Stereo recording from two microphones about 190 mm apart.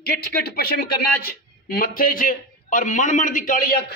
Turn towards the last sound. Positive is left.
turn(degrees=45)  # may be behind; listen again after turning